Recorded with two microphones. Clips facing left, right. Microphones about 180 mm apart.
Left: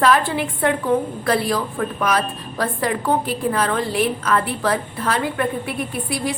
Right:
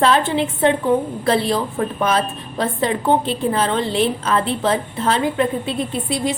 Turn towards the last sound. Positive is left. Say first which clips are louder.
# right 3 dB
turn(degrees=-20)  # may be behind; listen again after turning